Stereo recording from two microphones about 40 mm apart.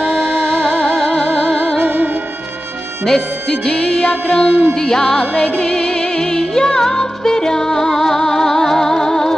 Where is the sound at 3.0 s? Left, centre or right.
Centre.